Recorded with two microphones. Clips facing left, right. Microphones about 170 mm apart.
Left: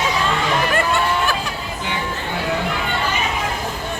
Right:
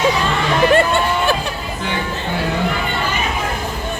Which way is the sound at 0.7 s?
25° right (ahead or behind).